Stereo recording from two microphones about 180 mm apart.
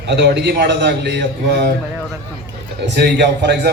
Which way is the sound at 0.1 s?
70° right (ahead or behind).